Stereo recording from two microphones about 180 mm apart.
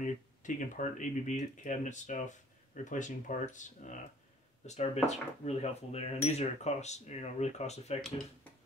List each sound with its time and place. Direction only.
0.0 s speech: 45° left (ahead or behind)